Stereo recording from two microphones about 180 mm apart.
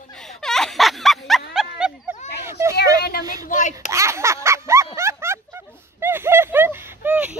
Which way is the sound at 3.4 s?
45° left (ahead or behind).